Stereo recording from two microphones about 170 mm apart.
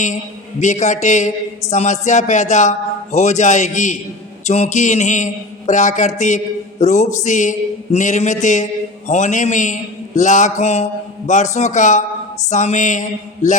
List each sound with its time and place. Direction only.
0.6 s speech: 45° left (ahead or behind)